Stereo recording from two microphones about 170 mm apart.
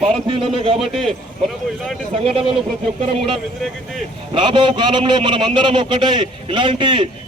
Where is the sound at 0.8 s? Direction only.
Centre (ahead or behind).